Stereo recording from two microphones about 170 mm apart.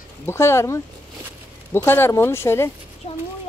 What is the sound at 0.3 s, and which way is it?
Speech, 15° left (ahead or behind).